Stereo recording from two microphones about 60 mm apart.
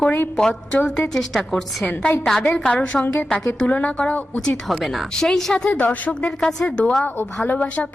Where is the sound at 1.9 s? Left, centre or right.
Left.